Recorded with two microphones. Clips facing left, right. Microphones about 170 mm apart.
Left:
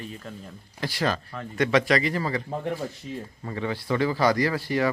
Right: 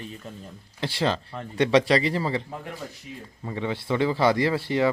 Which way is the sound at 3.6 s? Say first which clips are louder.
Right 1 dB; 20° right (ahead or behind).